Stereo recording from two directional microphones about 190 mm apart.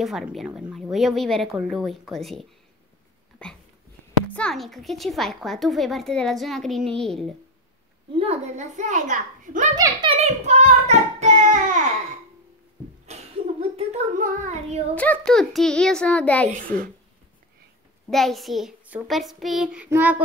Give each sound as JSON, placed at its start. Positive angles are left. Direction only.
{"t": 0.0, "sound": "a woman's voice", "side_deg": 0}
{"t": 3.4, "sound": "dog", "side_deg": 5}
{"t": 4.3, "sound": "a woman's voice", "side_deg": 5}
{"t": 8.1, "sound": "a child's voice", "side_deg": -30}
{"t": 9.8, "sound": "child singing", "side_deg": -20}
{"t": 13.0, "sound": "a sound", "side_deg": -35}
{"t": 15.0, "sound": "a woman's voice", "side_deg": 5}
{"t": 16.4, "sound": "a child's voice", "side_deg": -45}
{"t": 18.1, "sound": "a woman's voice", "side_deg": 0}